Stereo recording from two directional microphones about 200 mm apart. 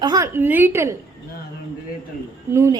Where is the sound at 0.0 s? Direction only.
20° right (ahead or behind).